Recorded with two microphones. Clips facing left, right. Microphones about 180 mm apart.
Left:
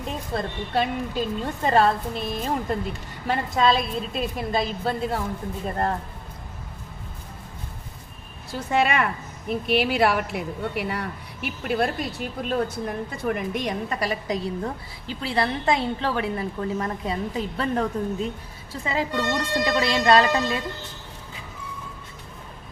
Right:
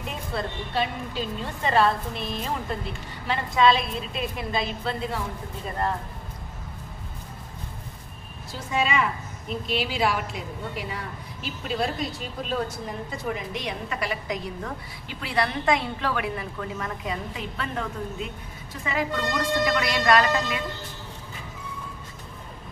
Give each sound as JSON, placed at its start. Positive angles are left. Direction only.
{"t": 0.4, "sound": "a woman's voice", "side_deg": 45}
{"t": 3.3, "sound": "a woman's voice", "side_deg": 45}
{"t": 8.5, "sound": "a woman's voice", "side_deg": 65}